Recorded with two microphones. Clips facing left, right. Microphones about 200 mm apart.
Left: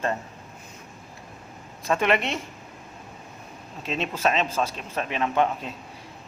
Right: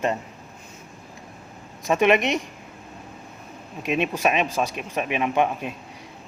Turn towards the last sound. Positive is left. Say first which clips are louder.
# right 1 dB
turn(degrees=-15)  # may be behind; listen again after turning